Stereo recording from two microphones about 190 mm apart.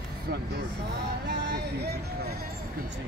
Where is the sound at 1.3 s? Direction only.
60° right (ahead or behind).